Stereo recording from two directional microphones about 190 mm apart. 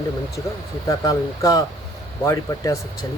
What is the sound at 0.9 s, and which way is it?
Speech, 15° left (ahead or behind).